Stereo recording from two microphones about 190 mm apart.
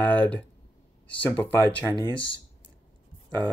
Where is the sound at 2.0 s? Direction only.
25° left (ahead or behind).